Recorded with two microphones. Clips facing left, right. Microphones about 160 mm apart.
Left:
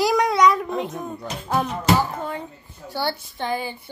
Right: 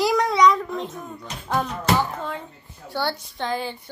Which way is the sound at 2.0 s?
10° left (ahead or behind).